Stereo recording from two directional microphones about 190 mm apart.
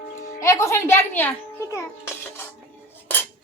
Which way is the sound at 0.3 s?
15° left (ahead or behind).